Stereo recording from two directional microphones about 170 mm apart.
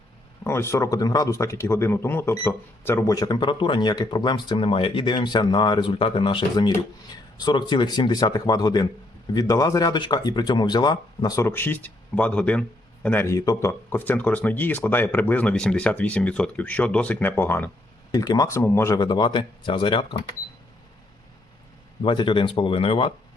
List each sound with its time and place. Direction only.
0.4 s speech: 15° left (ahead or behind)
18.1 s speech: 25° left (ahead or behind)
18.9 s speech: 25° left (ahead or behind)
22.0 s speech: 30° left (ahead or behind)